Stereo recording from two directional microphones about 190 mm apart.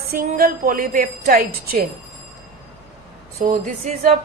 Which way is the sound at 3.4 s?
45° right (ahead or behind).